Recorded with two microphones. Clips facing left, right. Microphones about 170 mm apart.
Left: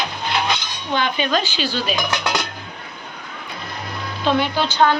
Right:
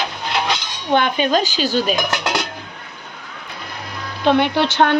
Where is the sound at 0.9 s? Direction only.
50° right (ahead or behind).